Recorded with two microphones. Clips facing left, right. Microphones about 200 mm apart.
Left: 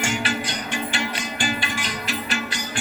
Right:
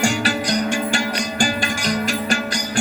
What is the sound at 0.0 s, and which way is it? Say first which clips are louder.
Music: right 5 dB; 40° right (ahead or behind).